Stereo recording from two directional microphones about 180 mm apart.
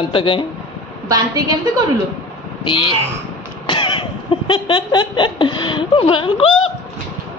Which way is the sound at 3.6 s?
30° left (ahead or behind).